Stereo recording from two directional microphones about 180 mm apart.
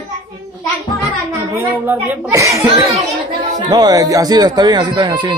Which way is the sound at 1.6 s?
10° right (ahead or behind).